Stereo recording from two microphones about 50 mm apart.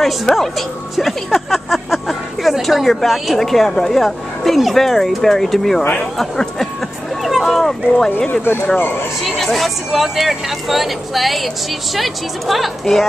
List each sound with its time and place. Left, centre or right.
0.0 s speech: centre
7.4 s a sound: centre
8.3 s speech: left
9.2 s speech: centre